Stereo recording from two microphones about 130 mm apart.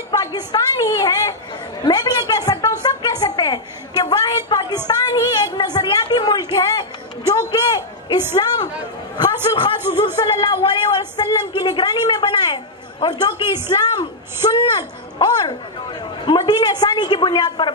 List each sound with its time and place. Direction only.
0.1 s a woman's voice: 30° left (ahead or behind)
1.9 s a sound: 30° left (ahead or behind)
9.1 s chatter: 35° left (ahead or behind)
10.2 s speech: 35° left (ahead or behind)